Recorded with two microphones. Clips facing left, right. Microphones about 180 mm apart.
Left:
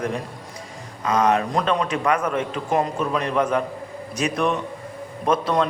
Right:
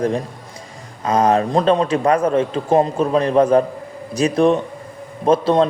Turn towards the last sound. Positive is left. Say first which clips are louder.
# right 6 dB
turn(degrees=-30)  # may be behind; listen again after turning